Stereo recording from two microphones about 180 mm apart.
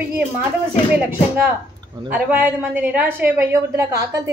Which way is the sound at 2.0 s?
10° right (ahead or behind).